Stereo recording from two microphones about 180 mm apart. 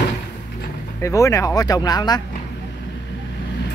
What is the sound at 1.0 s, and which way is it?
Speech, 15° left (ahead or behind).